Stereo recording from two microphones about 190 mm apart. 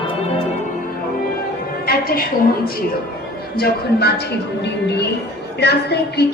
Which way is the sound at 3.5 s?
55° left (ahead or behind).